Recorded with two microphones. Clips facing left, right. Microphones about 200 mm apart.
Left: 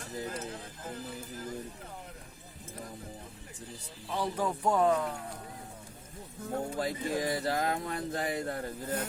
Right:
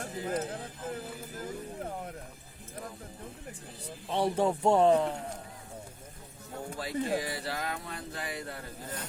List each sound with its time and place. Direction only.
0.0 s speech: 50° right (ahead or behind)
4.1 s speech: 25° right (ahead or behind)
6.5 s speech: 45° left (ahead or behind)